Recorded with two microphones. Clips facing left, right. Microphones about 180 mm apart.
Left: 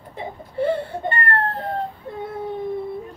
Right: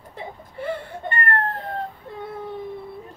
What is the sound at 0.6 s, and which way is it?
Wheeze, 30° left (ahead or behind).